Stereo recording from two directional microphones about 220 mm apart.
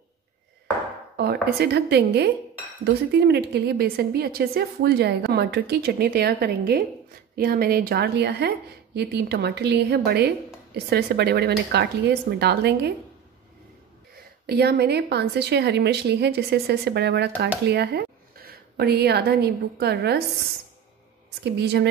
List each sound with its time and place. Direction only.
1.1 s a woman's voice: 45° right (ahead or behind)
14.4 s a woman's voice: 45° right (ahead or behind)
21.5 s a woman's voice: 50° right (ahead or behind)